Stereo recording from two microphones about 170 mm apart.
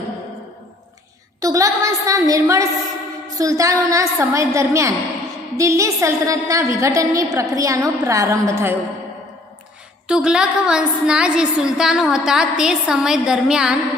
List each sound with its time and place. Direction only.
1.4 s a woman's voice: 20° right (ahead or behind)
10.1 s a woman's voice: 5° right (ahead or behind)